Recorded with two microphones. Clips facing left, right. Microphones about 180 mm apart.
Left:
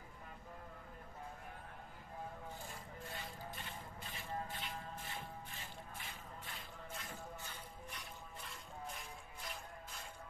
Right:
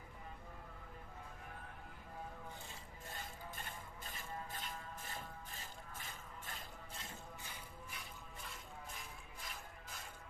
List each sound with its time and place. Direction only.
3.2 s music: 45° right (ahead or behind)